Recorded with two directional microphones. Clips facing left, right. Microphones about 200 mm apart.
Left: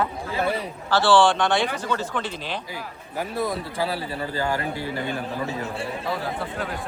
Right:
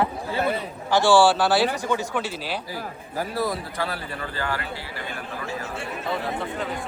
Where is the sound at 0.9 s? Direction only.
10° right (ahead or behind).